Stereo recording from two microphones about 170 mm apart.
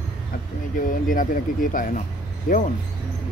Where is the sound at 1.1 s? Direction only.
55° left (ahead or behind).